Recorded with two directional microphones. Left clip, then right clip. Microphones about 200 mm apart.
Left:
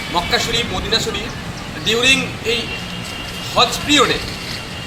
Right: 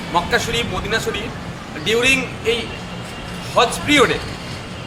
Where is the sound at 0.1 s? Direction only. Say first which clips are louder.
Even; 5° right (ahead or behind).